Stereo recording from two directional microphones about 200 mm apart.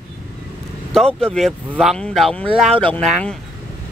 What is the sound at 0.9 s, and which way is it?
Speech, 5° left (ahead or behind).